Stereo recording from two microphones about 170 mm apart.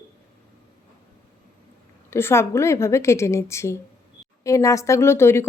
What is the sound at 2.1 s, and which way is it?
A woman's voice, 15° left (ahead or behind).